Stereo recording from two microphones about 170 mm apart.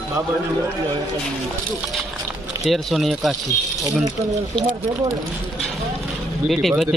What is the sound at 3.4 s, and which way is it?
Speech, 20° right (ahead or behind).